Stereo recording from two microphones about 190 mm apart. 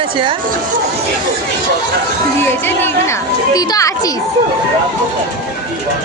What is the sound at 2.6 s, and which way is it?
A woman's voice, 10° left (ahead or behind).